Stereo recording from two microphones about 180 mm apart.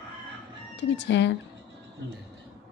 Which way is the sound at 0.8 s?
85° left.